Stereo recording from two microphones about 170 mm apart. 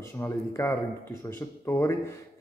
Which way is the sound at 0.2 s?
15° left (ahead or behind).